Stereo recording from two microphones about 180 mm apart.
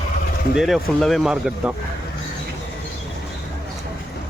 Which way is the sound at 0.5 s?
Centre (ahead or behind).